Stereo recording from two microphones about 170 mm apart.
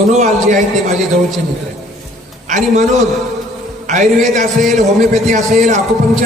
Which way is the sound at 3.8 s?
45° right (ahead or behind).